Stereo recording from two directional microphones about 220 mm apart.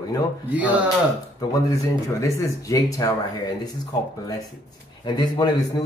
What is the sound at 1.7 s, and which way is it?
Speech, 15° left (ahead or behind).